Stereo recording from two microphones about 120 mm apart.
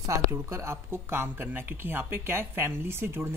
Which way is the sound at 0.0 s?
25° right (ahead or behind).